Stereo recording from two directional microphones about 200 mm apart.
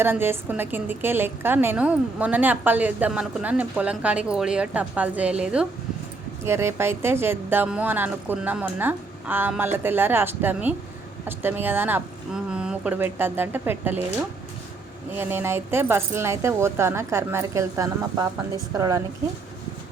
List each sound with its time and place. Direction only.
0.0 s a woman's voice: 10° right (ahead or behind)
15.1 s a woman's voice: 10° right (ahead or behind)